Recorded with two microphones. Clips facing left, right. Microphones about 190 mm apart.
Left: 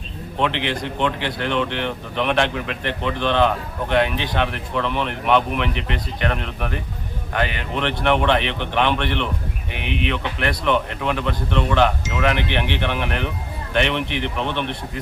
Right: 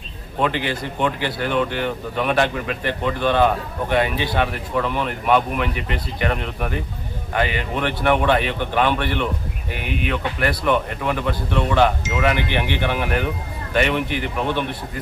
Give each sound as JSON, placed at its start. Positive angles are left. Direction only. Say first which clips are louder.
{"t": 0.3, "sound": "speech", "louder": "right 1 dB", "side_deg": -5}